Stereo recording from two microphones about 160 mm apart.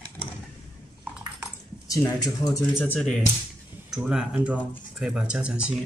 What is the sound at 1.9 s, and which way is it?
Speech, 20° left (ahead or behind).